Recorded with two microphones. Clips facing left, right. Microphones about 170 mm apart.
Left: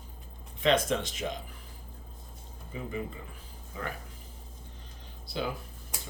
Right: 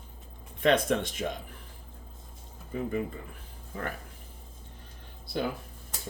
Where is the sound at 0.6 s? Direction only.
55° right (ahead or behind).